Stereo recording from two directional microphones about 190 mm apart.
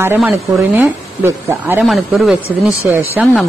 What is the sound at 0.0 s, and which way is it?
Speech, 10° right (ahead or behind).